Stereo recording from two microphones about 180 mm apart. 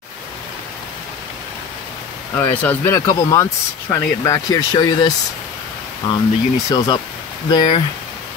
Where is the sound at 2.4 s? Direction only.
10° left (ahead or behind).